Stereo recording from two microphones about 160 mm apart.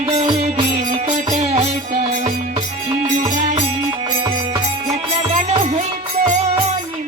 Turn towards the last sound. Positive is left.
turn(degrees=-45)  # may be behind; listen again after turning